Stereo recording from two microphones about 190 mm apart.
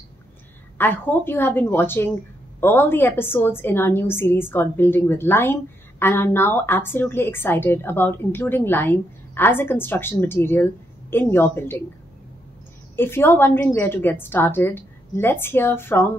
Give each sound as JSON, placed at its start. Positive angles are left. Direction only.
{"t": 0.7, "sound": "a woman's voice", "side_deg": 10}
{"t": 12.9, "sound": "a woman's voice", "side_deg": 10}